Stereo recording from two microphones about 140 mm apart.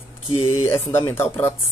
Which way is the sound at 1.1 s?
15° left (ahead or behind).